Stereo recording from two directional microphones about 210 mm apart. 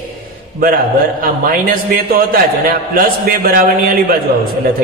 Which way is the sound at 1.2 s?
45° right (ahead or behind).